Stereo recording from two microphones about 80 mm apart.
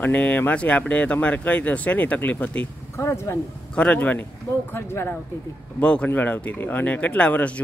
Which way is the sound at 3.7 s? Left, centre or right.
Centre.